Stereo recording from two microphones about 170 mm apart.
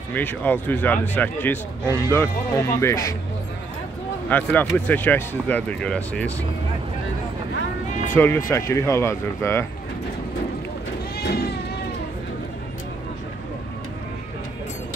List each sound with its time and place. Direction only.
0.1 s speech: 10° left (ahead or behind)
4.3 s speech: 10° left (ahead or behind)
8.1 s speech: 10° left (ahead or behind)
11.1 s a sound: 70° left (ahead or behind)